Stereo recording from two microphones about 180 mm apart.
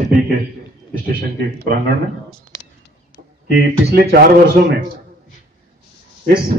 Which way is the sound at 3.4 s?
60° right (ahead or behind).